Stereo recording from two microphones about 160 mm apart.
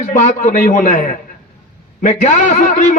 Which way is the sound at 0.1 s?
50° left (ahead or behind).